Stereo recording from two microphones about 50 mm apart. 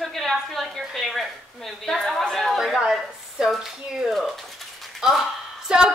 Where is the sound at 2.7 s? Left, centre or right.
Centre.